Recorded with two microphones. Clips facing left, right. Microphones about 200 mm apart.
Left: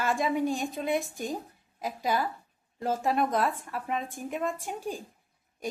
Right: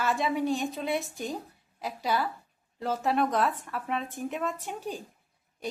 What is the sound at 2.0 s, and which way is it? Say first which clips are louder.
A woman's voice: even; 15° left (ahead or behind).